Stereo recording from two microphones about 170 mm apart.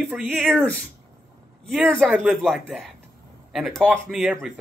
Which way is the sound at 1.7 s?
Centre (ahead or behind).